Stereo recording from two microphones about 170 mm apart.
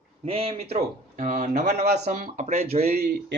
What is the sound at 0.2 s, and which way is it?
Speech, 35° right (ahead or behind).